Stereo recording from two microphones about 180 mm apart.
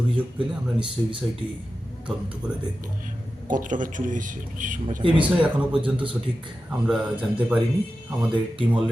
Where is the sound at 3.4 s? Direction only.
45° right (ahead or behind).